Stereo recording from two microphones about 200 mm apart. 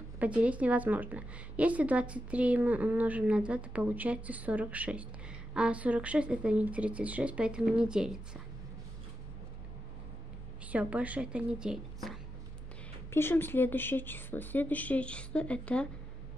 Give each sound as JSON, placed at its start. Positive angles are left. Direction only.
{"t": 0.2, "sound": "a woman's voice", "side_deg": -5}
{"t": 10.7, "sound": "speech", "side_deg": -5}
{"t": 13.1, "sound": "speech", "side_deg": 10}